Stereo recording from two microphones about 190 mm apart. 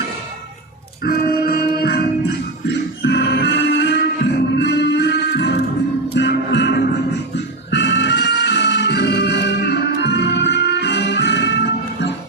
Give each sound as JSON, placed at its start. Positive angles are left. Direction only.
{"t": 1.0, "sound": "music", "side_deg": 55}